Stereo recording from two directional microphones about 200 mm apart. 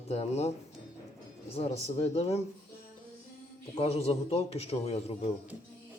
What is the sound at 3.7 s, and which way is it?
A man's voice, 30° left (ahead or behind).